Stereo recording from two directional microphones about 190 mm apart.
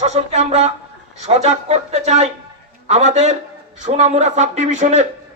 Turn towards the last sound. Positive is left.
turn(degrees=-40)  # may be behind; listen again after turning